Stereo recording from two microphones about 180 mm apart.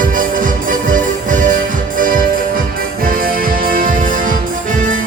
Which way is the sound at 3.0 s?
50° right (ahead or behind).